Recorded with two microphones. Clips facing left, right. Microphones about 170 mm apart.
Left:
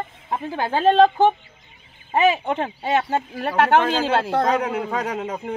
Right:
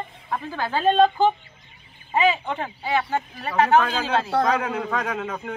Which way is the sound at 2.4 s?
25° left (ahead or behind).